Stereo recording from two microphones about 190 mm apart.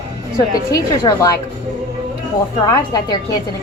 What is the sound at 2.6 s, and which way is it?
Speech, 20° left (ahead or behind).